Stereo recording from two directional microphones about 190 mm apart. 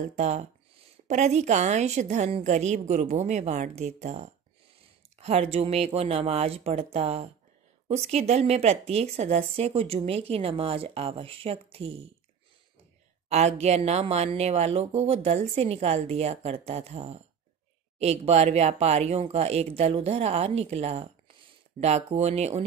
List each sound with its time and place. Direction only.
0.0 s speech: 35° right (ahead or behind)
13.3 s speech: 35° right (ahead or behind)